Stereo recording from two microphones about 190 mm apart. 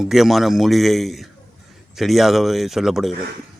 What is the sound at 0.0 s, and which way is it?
A man's voice, centre (ahead or behind).